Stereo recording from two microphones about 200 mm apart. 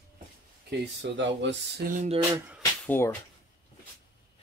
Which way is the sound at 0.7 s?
60° right (ahead or behind).